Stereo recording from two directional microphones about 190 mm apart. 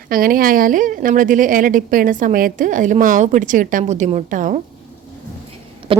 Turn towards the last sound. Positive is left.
turn(degrees=-30)  # may be behind; listen again after turning